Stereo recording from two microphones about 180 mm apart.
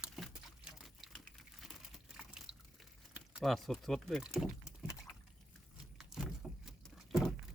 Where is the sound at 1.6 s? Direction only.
Centre (ahead or behind).